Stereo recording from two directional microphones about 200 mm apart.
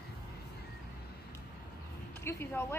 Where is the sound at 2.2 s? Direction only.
10° left (ahead or behind).